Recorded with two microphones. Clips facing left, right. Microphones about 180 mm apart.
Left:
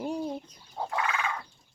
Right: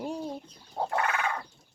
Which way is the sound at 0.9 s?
60° right (ahead or behind).